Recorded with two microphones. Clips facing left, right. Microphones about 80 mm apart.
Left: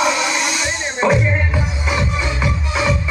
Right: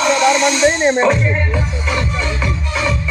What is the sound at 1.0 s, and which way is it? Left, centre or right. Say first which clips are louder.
Music: right 1 dB; centre.